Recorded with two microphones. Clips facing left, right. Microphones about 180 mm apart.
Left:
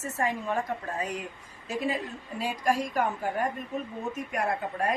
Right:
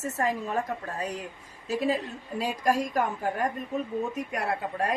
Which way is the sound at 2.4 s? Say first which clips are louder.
Right 2 dB; 40° right (ahead or behind).